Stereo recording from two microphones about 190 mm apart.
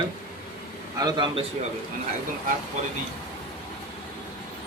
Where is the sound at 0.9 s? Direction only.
20° right (ahead or behind).